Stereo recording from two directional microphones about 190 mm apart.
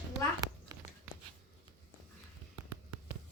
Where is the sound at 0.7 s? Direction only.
20° right (ahead or behind).